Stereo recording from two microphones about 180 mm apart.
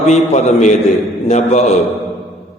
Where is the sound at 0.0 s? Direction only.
40° left (ahead or behind).